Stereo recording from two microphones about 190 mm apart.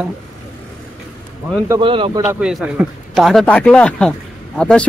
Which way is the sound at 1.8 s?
25° right (ahead or behind).